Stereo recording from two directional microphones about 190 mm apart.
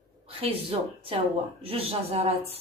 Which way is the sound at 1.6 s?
30° right (ahead or behind).